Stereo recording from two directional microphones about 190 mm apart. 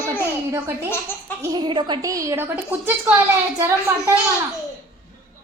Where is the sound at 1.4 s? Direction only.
20° right (ahead or behind).